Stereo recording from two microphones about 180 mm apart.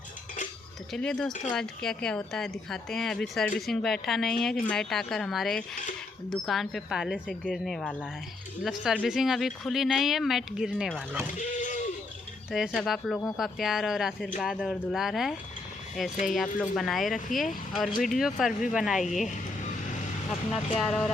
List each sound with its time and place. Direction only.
0.9 s speech: 5° left (ahead or behind)
11.3 s a sound: 45° left (ahead or behind)
12.5 s speech: 5° right (ahead or behind)
20.5 s speech: centre (ahead or behind)